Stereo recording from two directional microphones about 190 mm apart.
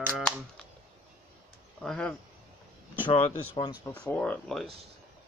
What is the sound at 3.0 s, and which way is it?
Speech, 25° left (ahead or behind).